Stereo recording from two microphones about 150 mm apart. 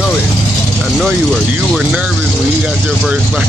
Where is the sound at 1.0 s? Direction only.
5° left (ahead or behind).